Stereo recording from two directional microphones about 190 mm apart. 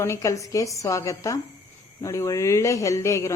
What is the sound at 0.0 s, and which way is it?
Speech, 15° left (ahead or behind).